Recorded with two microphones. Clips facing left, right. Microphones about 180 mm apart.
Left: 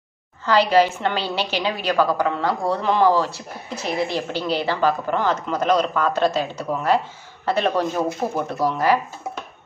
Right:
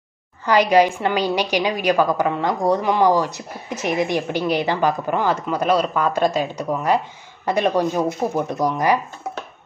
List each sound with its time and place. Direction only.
0.5 s a woman's voice: 15° right (ahead or behind)